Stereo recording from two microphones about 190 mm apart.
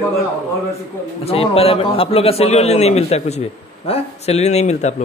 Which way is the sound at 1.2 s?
30° left (ahead or behind).